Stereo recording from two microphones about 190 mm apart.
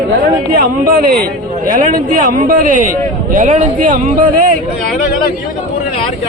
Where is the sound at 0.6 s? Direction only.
50° right (ahead or behind).